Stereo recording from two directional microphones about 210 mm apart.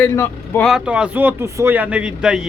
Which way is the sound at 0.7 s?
5° right (ahead or behind).